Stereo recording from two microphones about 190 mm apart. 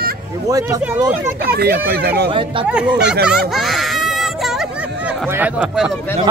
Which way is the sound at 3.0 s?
60° right (ahead or behind).